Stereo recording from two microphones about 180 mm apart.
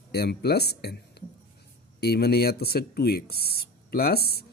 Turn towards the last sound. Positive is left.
turn(degrees=60)  # may be behind; listen again after turning